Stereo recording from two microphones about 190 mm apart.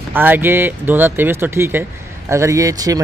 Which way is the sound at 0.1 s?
10° right (ahead or behind).